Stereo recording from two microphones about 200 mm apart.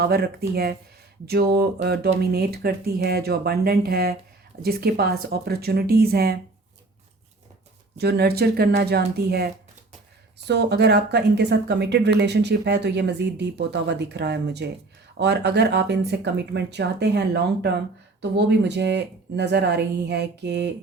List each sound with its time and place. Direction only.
0.0 s speech: 50° right (ahead or behind)
7.9 s speech: 55° right (ahead or behind)